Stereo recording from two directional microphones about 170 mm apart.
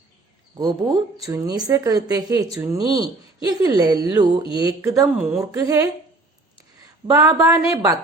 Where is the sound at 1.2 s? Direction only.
20° right (ahead or behind).